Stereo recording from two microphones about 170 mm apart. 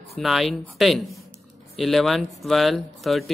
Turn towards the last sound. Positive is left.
turn(degrees=0)  # may be behind; listen again after turning